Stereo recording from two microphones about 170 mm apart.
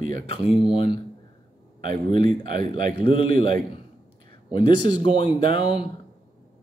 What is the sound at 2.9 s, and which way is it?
Speech, 30° left (ahead or behind).